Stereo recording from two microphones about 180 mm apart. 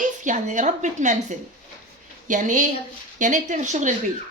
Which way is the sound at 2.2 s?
45° right (ahead or behind).